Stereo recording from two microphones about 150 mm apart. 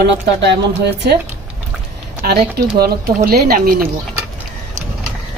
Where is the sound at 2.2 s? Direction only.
90° right.